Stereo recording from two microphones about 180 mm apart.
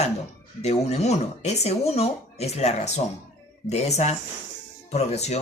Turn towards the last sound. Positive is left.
turn(degrees=40)  # may be behind; listen again after turning